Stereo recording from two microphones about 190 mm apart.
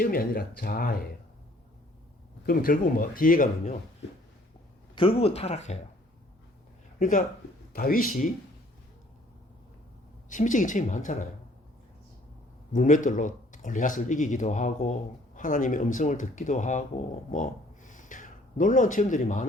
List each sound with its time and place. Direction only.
0.0 s speech: 50° left (ahead or behind)
2.5 s speech: 50° left (ahead or behind)
4.9 s speech: 30° left (ahead or behind)
7.0 s speech: 45° left (ahead or behind)
10.2 s speech: 40° left (ahead or behind)
12.7 s speech: 40° left (ahead or behind)
17.3 s a sound: 40° left (ahead or behind)